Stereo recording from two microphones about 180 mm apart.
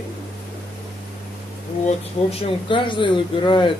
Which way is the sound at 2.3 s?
25° left (ahead or behind).